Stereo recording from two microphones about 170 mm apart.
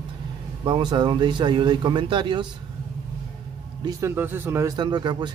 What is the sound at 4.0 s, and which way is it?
A man's voice, 15° right (ahead or behind).